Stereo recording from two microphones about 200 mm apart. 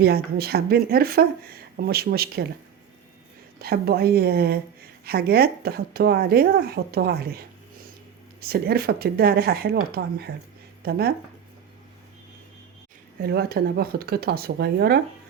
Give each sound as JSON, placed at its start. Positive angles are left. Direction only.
{"t": 0.0, "sound": "speech", "side_deg": -50}
{"t": 3.6, "sound": "speech", "side_deg": -50}
{"t": 13.2, "sound": "speech", "side_deg": -50}